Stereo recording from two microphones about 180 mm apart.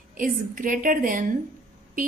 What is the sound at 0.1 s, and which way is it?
A woman's voice, 50° right (ahead or behind).